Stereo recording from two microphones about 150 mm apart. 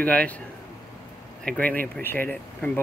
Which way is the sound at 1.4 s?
10° left (ahead or behind).